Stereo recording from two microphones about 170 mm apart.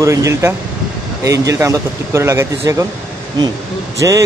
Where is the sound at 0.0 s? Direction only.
15° right (ahead or behind).